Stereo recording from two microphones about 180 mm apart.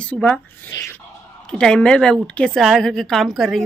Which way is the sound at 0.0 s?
5° left (ahead or behind).